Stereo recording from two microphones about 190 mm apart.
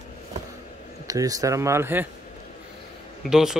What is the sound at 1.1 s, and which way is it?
Speech, 20° right (ahead or behind).